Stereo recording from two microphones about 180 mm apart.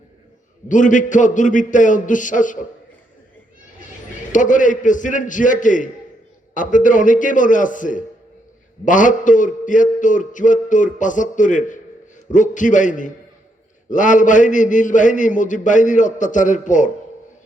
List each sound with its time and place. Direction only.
0.7 s a man's voice: 45° left (ahead or behind)
4.3 s a man's voice: 45° left (ahead or behind)